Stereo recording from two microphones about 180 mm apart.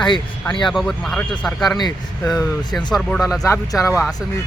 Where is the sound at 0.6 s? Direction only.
Centre (ahead or behind).